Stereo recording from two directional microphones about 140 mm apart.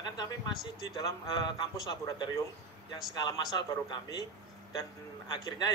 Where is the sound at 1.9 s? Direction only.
30° left (ahead or behind).